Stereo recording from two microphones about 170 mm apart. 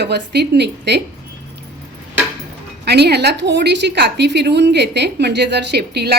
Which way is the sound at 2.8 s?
75° right (ahead or behind).